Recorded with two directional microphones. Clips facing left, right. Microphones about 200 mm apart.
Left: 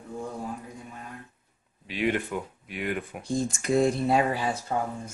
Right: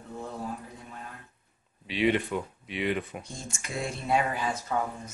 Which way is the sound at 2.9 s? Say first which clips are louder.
Even; 10° left (ahead or behind).